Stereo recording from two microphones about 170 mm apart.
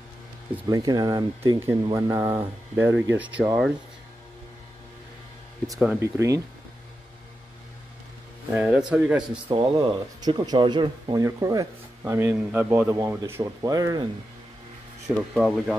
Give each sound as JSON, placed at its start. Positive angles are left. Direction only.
{"t": 0.7, "sound": "speech", "side_deg": -20}
{"t": 5.9, "sound": "speech", "side_deg": -15}
{"t": 8.5, "sound": "speech", "side_deg": -5}
{"t": 9.5, "sound": "speech", "side_deg": -30}
{"t": 15.1, "sound": "speech", "side_deg": 0}